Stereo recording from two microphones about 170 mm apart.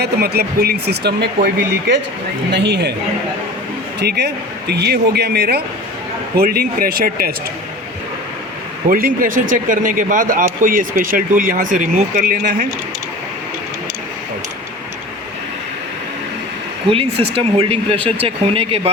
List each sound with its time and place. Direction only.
0.0 s speech: 65° right (ahead or behind)
2.5 s a woman's voice: 85° right
4.0 s speech: 70° right (ahead or behind)
8.9 s speech: 55° right (ahead or behind)
16.9 s speech: 35° right (ahead or behind)